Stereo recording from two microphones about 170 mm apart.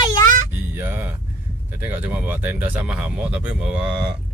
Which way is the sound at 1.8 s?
10° right (ahead or behind).